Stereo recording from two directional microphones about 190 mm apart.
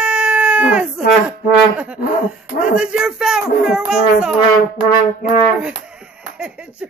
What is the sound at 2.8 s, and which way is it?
Speech, 5° right (ahead or behind).